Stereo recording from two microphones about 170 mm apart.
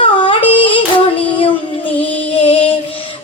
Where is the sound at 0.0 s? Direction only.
30° left (ahead or behind).